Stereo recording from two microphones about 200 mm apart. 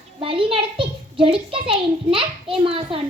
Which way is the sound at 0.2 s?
25° right (ahead or behind).